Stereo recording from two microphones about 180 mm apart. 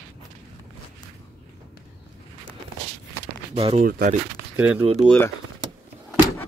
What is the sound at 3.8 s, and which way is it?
Speech, 55° right (ahead or behind).